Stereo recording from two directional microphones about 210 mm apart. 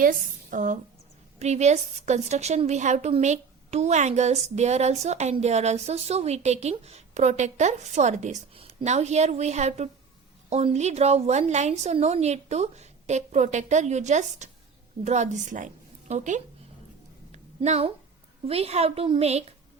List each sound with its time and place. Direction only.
0.0 s a woman's voice: 40° right (ahead or behind)
17.3 s a sound: 30° right (ahead or behind)
18.4 s a woman's voice: 30° right (ahead or behind)